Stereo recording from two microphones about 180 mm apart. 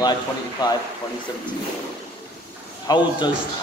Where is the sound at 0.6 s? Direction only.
25° left (ahead or behind).